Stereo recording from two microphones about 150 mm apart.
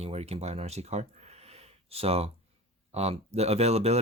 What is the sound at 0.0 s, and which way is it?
Speech, 45° right (ahead or behind).